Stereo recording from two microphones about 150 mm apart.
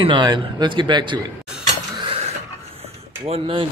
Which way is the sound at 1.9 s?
35° right (ahead or behind).